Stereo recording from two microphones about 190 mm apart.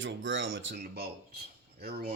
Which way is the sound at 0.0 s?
80° right.